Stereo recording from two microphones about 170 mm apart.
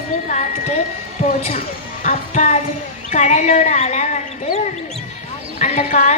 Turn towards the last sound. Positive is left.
turn(degrees=45)  # may be behind; listen again after turning